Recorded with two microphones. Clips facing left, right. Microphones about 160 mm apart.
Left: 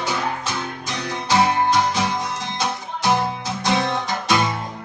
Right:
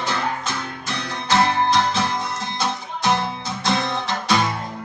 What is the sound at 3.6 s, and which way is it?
Music, 15° left (ahead or behind).